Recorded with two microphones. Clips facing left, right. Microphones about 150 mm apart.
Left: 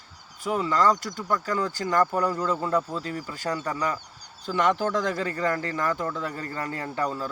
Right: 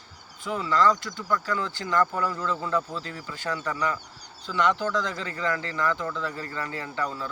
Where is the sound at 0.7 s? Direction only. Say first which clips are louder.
Right 2 dB; 40° left (ahead or behind).